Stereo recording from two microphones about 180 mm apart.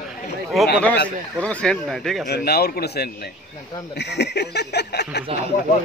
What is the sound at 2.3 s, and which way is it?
Speech, 60° left (ahead or behind).